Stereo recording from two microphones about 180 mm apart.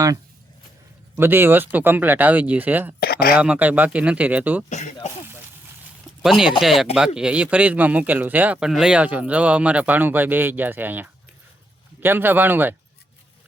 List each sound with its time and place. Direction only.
1.1 s speech: 10° right (ahead or behind)
3.0 s a sound: 60° left (ahead or behind)
3.3 s speech: 10° right (ahead or behind)
4.7 s speech: 40° left (ahead or behind)
6.2 s speech: centre (ahead or behind)